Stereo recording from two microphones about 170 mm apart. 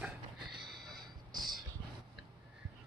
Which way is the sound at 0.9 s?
25° right (ahead or behind).